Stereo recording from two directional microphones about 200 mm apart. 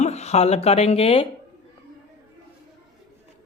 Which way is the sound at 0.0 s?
35° left (ahead or behind).